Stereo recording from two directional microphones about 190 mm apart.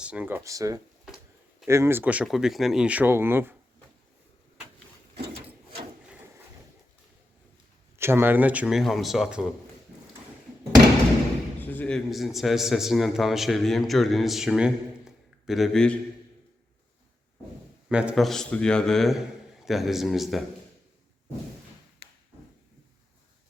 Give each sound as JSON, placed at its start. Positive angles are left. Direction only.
{"t": 0.0, "sound": "speech", "side_deg": -5}
{"t": 5.1, "sound": "a sound", "side_deg": -30}
{"t": 7.9, "sound": "a man's voice", "side_deg": -10}
{"t": 11.6, "sound": "a man's voice", "side_deg": 10}
{"t": 17.8, "sound": "a man's voice", "side_deg": -5}